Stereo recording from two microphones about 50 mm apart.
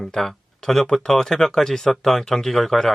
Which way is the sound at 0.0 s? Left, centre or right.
Centre.